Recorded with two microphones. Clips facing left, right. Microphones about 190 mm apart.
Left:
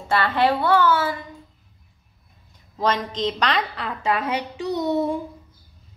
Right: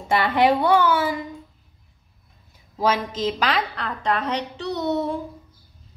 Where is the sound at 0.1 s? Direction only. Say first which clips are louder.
Right 2 dB; 15° right (ahead or behind).